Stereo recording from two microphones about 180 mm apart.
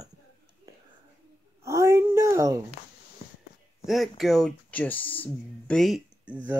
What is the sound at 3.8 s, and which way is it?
Speech, centre (ahead or behind).